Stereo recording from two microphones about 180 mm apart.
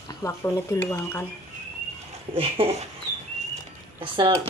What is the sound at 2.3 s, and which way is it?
Speech, 30° right (ahead or behind).